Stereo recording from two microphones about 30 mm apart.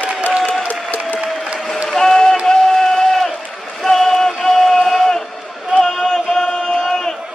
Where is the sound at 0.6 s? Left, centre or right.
Left.